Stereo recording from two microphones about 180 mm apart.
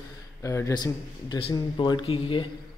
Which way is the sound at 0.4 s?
15° left (ahead or behind).